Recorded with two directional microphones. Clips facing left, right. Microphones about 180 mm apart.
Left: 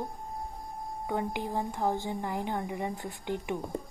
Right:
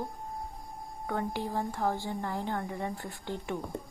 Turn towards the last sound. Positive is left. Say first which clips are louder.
# left 2 dB
turn(degrees=15)  # may be behind; listen again after turning